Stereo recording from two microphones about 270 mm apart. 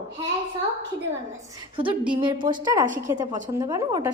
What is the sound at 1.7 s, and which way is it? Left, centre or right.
A woman's voice, centre.